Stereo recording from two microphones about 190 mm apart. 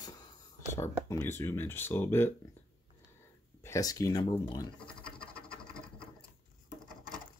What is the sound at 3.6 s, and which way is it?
Speech, 15° left (ahead or behind).